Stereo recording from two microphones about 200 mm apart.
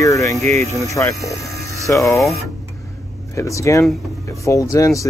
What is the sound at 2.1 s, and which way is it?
Speech, centre (ahead or behind).